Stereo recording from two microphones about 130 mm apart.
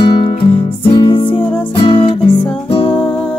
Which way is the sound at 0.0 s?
45° left (ahead or behind).